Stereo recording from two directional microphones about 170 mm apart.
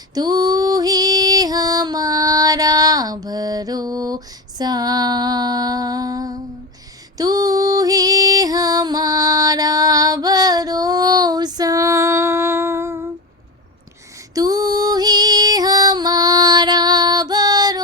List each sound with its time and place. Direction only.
0.1 s female singing: 20° right (ahead or behind)
7.2 s music: 20° right (ahead or behind)
14.3 s female singing: 20° right (ahead or behind)